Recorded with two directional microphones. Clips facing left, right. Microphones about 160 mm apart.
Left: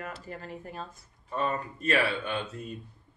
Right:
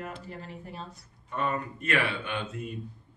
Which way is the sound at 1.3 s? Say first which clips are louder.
Even; 35° left (ahead or behind).